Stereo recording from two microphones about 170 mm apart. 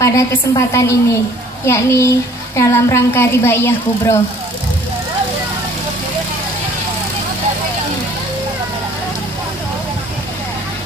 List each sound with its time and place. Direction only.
0.0 s a woman's voice: 20° left (ahead or behind)